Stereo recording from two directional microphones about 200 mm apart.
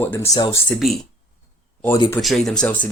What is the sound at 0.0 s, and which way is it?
Speech, 10° left (ahead or behind).